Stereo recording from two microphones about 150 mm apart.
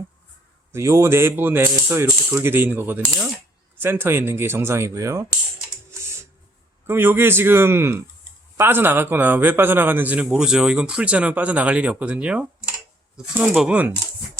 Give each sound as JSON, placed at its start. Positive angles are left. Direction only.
{"t": 0.7, "sound": "a man's voice", "side_deg": -15}
{"t": 6.8, "sound": "a man's voice", "side_deg": -15}